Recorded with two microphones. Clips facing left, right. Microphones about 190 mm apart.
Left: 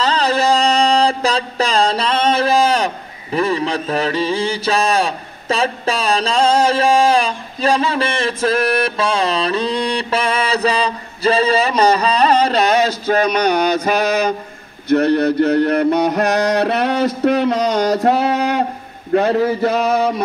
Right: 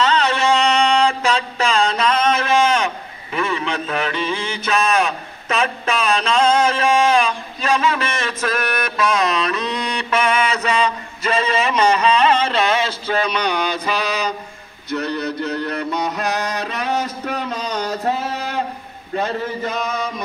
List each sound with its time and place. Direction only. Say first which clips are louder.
0.0 s mantra: left 1 dB; 35° left (ahead or behind); by 17.9 s 75° left (ahead or behind)
18.0 s a sound: left 7 dB; 70° left (ahead or behind)
19.1 s a man's voice: left 8 dB; 70° left (ahead or behind)